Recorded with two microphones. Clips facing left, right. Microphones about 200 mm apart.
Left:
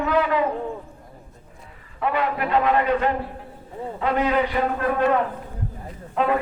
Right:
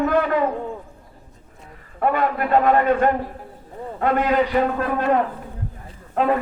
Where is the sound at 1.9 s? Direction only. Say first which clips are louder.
Right 3 dB; 45° right (ahead or behind).